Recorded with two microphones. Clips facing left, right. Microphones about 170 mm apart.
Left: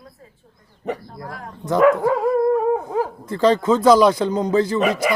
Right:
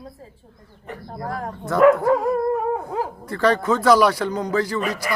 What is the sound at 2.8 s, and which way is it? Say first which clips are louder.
A man's voice: left 4 dB; 20° left (ahead or behind).